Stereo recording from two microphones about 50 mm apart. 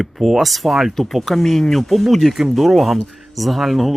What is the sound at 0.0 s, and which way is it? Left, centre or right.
Speech, centre.